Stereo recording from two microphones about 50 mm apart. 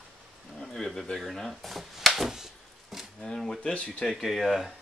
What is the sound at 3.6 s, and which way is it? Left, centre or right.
Speech, left.